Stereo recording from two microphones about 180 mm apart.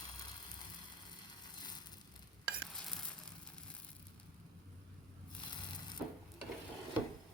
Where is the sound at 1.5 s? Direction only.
25° left (ahead or behind).